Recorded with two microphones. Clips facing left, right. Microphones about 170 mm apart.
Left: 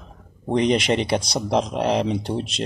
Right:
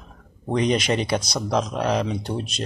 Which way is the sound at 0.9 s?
25° left (ahead or behind).